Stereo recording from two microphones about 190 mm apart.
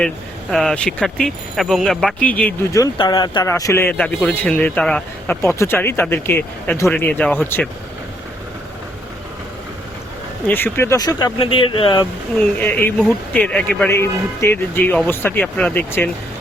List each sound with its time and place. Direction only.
0.5 s speech: 5° left (ahead or behind)
10.4 s speech: 10° left (ahead or behind); by 12.0 s 25° left (ahead or behind)
12.8 s speech: 5° left (ahead or behind)